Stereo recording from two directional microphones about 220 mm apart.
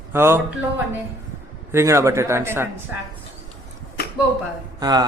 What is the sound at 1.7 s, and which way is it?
Speech, 15° right (ahead or behind).